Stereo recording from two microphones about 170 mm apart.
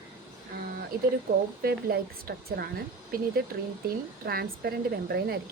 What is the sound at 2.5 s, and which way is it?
Speech, 65° right (ahead or behind).